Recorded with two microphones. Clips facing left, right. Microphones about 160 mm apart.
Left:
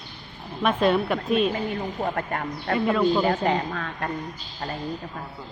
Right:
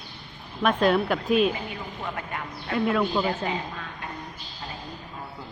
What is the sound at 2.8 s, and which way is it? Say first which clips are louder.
Speech: left 2 dB; centre (ahead or behind).